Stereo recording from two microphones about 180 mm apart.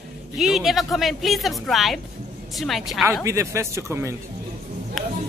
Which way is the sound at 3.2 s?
15° right (ahead or behind).